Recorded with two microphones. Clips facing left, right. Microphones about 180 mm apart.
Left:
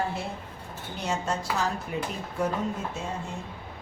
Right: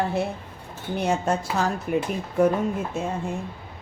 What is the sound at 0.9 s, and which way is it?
A man's voice, 55° right (ahead or behind).